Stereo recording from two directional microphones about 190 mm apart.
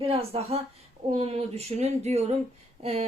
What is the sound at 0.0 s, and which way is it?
A woman's voice, 30° right (ahead or behind).